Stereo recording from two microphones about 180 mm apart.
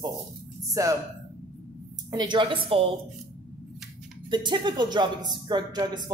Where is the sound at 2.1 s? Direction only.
25° right (ahead or behind).